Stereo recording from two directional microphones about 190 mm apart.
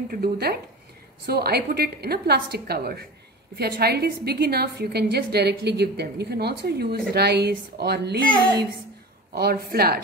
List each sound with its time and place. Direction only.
0.1 s a woman's voice: 55° right (ahead or behind)
9.3 s a woman's voice: 55° right (ahead or behind)